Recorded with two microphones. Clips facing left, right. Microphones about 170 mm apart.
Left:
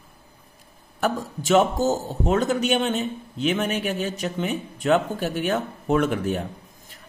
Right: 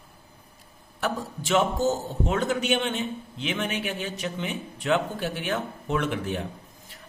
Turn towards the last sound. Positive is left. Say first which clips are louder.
# left 5 dB
turn(degrees=45)  # may be behind; listen again after turning